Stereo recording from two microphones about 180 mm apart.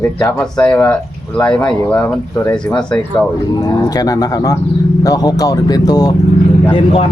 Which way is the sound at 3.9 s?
20° left (ahead or behind).